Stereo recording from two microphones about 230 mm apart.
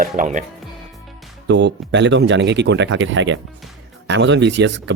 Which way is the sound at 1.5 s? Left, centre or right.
Right.